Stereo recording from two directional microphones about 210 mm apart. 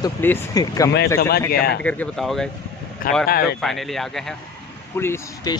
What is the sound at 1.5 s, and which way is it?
Speech, 45° left (ahead or behind).